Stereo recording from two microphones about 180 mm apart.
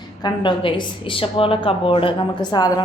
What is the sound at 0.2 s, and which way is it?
A woman's voice, 25° left (ahead or behind).